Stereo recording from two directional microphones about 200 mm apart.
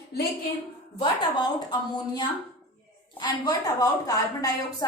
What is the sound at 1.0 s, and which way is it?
A woman's voice, 20° left (ahead or behind).